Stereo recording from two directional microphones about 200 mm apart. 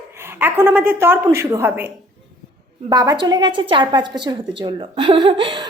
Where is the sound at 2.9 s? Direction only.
20° right (ahead or behind).